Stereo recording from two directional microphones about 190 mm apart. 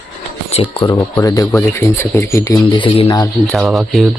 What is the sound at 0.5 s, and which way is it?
Speech, 25° left (ahead or behind).